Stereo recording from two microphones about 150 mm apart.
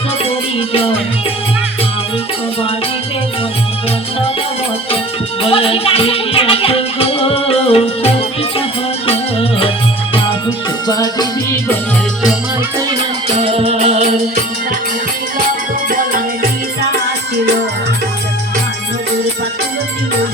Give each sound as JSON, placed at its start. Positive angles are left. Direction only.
{"t": 0.3, "sound": "music", "side_deg": 40}
{"t": 5.4, "sound": "music", "side_deg": 40}
{"t": 10.8, "sound": "music", "side_deg": 25}
{"t": 13.4, "sound": "music", "side_deg": -40}
{"t": 15.9, "sound": "music", "side_deg": -75}